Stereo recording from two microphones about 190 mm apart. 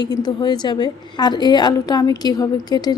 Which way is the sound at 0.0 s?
20° left (ahead or behind).